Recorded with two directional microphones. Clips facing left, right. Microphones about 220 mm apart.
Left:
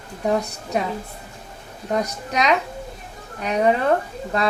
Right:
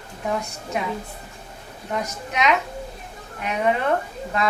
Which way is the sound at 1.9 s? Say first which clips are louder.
Left 3 dB; 35° left (ahead or behind).